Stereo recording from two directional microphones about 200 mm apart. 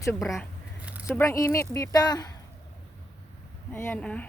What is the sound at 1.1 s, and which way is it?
Speech, 15° left (ahead or behind).